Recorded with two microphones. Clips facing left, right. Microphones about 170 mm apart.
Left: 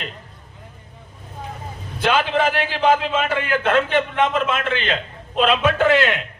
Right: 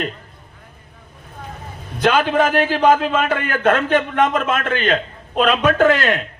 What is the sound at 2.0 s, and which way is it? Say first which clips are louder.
A man's voice: right 3 dB; 45° right (ahead or behind).